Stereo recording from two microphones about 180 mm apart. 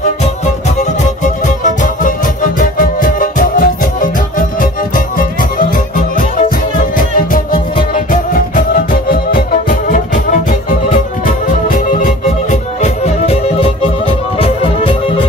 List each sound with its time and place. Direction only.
1.2 s music: 45° left (ahead or behind)
7.9 s music: 50° left (ahead or behind)
11.2 s music: 50° left (ahead or behind); by 15.0 s 30° left (ahead or behind)